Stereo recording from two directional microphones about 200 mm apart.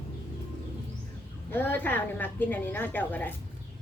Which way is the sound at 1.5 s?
10° left (ahead or behind).